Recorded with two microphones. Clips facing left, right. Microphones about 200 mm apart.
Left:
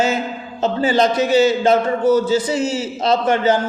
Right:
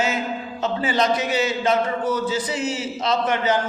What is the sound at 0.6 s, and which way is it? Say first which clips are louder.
A man's voice: left 6 dB; 30° left (ahead or behind).